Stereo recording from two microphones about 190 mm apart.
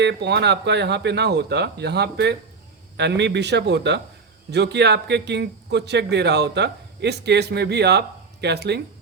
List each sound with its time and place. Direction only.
0.0 s a man's voice: 65° right (ahead or behind)